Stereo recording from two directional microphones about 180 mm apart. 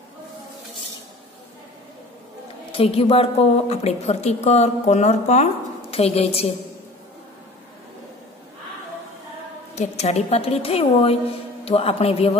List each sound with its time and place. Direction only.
2.7 s a woman's voice: 30° left (ahead or behind)
9.8 s a woman's voice: 35° left (ahead or behind)